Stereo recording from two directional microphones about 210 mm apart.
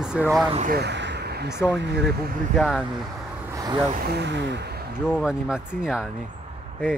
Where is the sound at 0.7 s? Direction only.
55° right (ahead or behind).